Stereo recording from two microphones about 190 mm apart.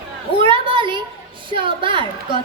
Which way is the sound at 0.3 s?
25° right (ahead or behind).